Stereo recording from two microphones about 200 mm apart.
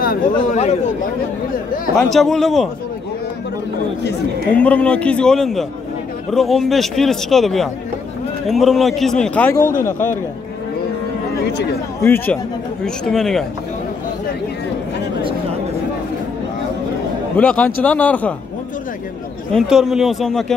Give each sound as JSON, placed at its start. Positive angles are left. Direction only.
{"t": 0.0, "sound": "speech", "side_deg": 45}
{"t": 2.1, "sound": "a man's voice", "side_deg": 0}
{"t": 4.6, "sound": "a man's voice", "side_deg": 5}
{"t": 12.0, "sound": "a man's voice", "side_deg": 10}
{"t": 17.4, "sound": "speech", "side_deg": 5}
{"t": 19.5, "sound": "a man's voice", "side_deg": 0}